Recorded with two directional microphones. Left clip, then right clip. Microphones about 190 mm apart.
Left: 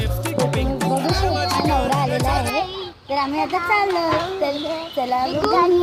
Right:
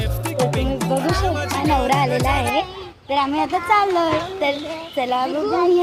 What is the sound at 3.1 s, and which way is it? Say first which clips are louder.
A child's voice: right 2 dB; 10° right (ahead or behind).